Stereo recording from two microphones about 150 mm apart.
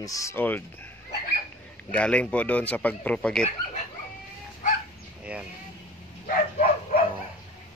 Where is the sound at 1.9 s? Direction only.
10° left (ahead or behind).